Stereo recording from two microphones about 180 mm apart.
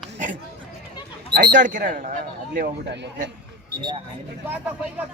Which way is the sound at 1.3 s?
50° right (ahead or behind).